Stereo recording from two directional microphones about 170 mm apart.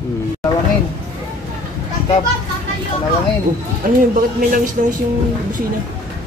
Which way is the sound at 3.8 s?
55° right (ahead or behind).